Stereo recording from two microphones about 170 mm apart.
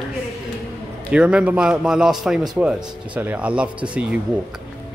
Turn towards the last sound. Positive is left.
turn(degrees=-10)  # may be behind; listen again after turning